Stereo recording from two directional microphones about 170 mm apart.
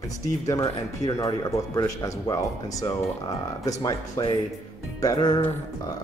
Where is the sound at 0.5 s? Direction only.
20° left (ahead or behind).